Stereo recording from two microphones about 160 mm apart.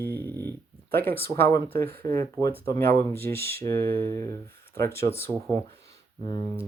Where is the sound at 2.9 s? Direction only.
70° right (ahead or behind).